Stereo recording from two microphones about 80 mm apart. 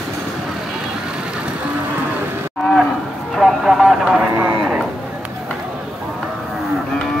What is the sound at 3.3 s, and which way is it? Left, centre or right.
Music, centre.